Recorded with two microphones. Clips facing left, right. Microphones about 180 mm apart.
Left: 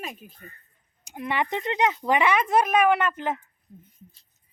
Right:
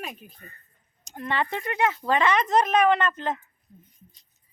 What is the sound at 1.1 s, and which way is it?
Speech, 10° left (ahead or behind).